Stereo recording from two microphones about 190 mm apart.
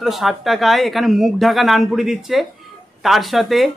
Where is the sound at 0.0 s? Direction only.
Centre (ahead or behind).